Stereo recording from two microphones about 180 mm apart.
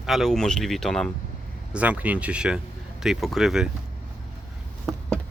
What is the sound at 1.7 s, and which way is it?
Speech, 10° right (ahead or behind).